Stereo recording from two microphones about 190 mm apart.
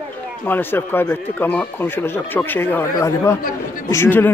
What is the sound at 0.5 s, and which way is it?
Speech, 10° left (ahead or behind).